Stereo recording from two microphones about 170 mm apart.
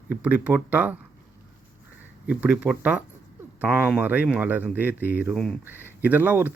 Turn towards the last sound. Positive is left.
turn(degrees=-10)  # may be behind; listen again after turning